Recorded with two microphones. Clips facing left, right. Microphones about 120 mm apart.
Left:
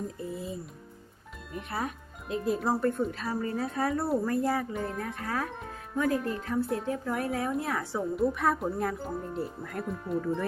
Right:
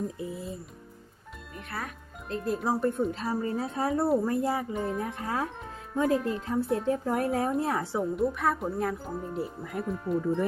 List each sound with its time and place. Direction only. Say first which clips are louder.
0.2 s speech: even; centre (ahead or behind)
1.5 s speech: left 4 dB; 20° left (ahead or behind)
2.2 s speech: left 1 dB; 5° left (ahead or behind)
3.1 s speech: right 2 dB; 25° right (ahead or behind)
6.8 s a woman's voice: right 4 dB; 35° right (ahead or behind)
8.1 s speech: left 2 dB; centre (ahead or behind)